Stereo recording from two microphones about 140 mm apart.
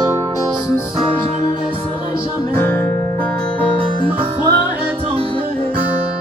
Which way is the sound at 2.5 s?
15° left (ahead or behind).